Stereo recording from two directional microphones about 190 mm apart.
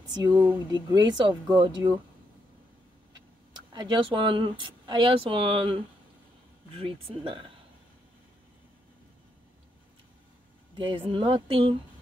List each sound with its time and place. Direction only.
0.1 s speech: 20° right (ahead or behind)
3.7 s speech: 25° right (ahead or behind)
11.1 s speech: 25° right (ahead or behind)